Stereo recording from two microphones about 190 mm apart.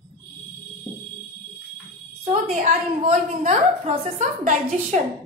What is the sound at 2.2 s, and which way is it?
A woman's voice, 35° right (ahead or behind).